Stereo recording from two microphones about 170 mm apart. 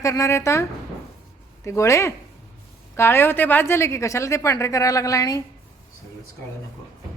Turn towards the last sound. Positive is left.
turn(degrees=20)  # may be behind; listen again after turning